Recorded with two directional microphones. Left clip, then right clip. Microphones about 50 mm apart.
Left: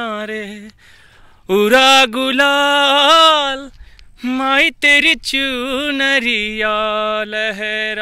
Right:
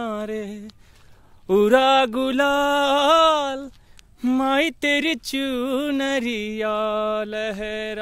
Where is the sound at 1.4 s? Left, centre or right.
Centre.